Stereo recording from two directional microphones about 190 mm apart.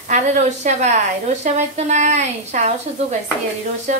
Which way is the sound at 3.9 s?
40° right (ahead or behind).